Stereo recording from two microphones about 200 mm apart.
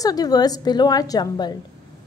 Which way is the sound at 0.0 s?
20° left (ahead or behind).